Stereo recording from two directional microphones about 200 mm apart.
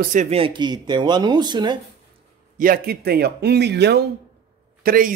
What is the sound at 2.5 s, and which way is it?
A man's voice, 45° right (ahead or behind).